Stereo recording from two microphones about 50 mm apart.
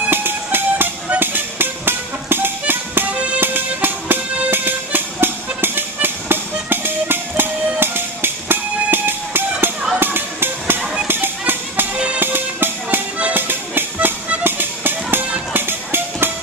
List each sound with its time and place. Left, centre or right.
0.1 s music: right
3.1 s music: right
3.3 s music: right
9.9 s a sound: right
11.1 s music: right